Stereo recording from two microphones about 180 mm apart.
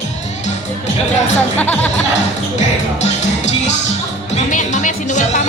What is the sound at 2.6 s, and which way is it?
Music, 40° left (ahead or behind).